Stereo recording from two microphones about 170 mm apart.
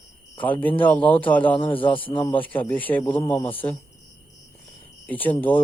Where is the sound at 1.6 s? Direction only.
30° left (ahead or behind).